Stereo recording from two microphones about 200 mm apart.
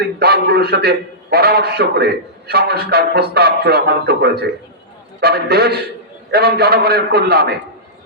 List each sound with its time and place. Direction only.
0.0 s a man's voice: 55° right (ahead or behind)